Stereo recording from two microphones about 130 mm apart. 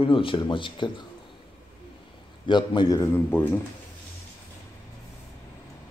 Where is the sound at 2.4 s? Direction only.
35° left (ahead or behind).